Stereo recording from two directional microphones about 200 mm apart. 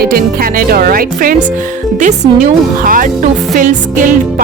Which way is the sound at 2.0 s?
40° right (ahead or behind).